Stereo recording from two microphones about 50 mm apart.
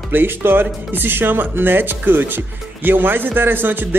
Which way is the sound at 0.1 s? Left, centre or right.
Right.